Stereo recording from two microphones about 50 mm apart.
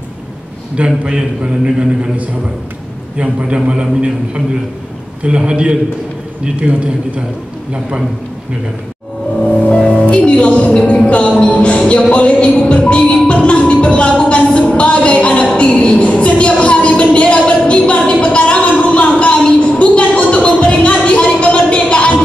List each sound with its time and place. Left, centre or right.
0.7 s a man's voice: centre
5.2 s a man's voice: right
9.8 s speech: left
11.1 s music: left
20.4 s a sound: left